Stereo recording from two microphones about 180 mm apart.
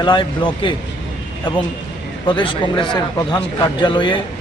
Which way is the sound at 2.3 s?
25° left (ahead or behind).